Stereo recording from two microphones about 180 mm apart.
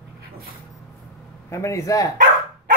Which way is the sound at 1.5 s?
15° left (ahead or behind).